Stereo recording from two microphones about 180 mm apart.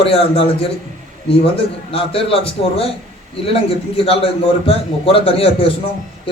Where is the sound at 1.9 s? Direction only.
30° left (ahead or behind).